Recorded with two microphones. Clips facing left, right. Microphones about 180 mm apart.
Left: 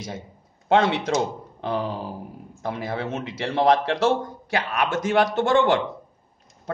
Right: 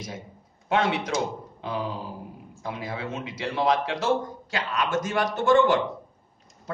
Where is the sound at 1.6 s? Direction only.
65° left (ahead or behind).